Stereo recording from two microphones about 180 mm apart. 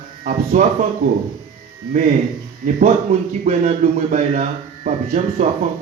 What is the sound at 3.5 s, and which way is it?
A man's voice, 35° right (ahead or behind).